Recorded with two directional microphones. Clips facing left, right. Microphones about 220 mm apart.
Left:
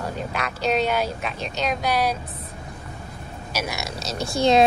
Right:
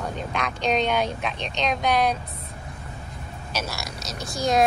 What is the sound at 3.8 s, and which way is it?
Speech, 30° left (ahead or behind).